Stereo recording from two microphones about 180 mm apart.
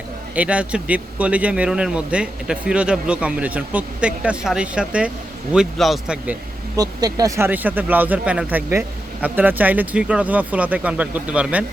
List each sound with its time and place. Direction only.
0.3 s speech: 5° right (ahead or behind)
6.7 s speech: 20° right (ahead or behind)